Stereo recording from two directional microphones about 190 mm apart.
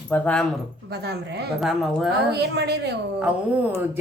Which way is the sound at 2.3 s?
60° right (ahead or behind).